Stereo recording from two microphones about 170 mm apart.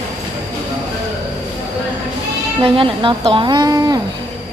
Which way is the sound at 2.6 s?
30° right (ahead or behind).